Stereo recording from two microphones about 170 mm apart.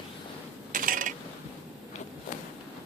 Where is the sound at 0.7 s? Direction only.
55° right (ahead or behind).